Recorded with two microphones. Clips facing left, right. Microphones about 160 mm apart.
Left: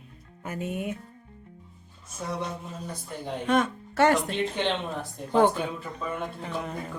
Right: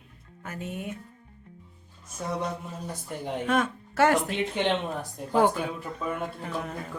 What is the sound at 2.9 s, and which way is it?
Speech, 15° right (ahead or behind).